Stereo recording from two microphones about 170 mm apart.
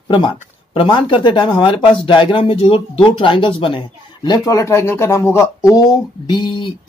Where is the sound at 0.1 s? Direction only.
30° left (ahead or behind).